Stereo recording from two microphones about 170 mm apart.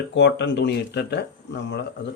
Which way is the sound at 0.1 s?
90° left.